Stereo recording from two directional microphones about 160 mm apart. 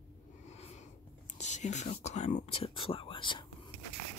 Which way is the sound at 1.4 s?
45° left (ahead or behind).